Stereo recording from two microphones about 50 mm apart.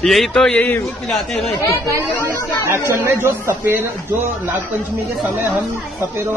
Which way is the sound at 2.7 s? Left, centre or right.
Right.